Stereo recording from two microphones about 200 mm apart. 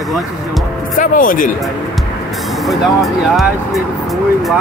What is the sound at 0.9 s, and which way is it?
Speech, 40° left (ahead or behind).